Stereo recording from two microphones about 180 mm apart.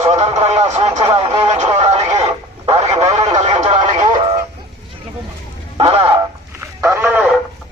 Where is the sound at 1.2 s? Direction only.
25° right (ahead or behind).